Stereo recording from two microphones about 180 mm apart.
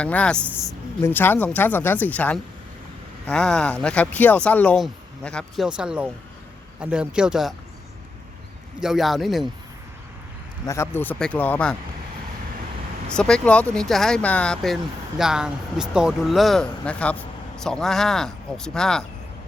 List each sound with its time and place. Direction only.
0.0 s speech: 5° left (ahead or behind)
8.8 s speech: centre (ahead or behind)
10.7 s speech: 15° left (ahead or behind)
13.1 s speech: 5° left (ahead or behind)